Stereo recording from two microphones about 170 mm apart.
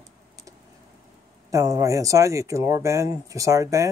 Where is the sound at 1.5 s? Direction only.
20° right (ahead or behind).